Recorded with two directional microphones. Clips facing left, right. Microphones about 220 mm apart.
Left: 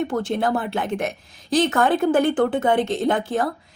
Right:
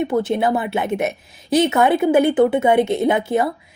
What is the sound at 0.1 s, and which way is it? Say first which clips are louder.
A woman's voice: right 4 dB; 5° right (ahead or behind).